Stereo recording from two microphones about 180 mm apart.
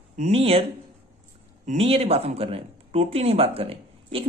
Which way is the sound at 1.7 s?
35° right (ahead or behind).